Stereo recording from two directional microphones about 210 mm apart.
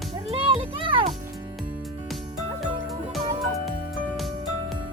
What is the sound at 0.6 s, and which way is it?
Music, 25° right (ahead or behind).